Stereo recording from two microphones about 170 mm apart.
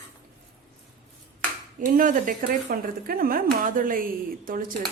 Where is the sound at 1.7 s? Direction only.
50° right (ahead or behind).